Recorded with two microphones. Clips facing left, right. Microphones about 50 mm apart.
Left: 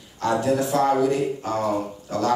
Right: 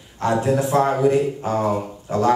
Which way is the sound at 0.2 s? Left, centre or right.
Right.